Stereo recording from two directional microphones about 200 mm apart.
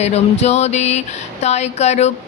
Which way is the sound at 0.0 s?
35° left (ahead or behind).